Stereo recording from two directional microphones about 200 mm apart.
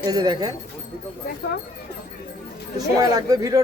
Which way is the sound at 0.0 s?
20° right (ahead or behind).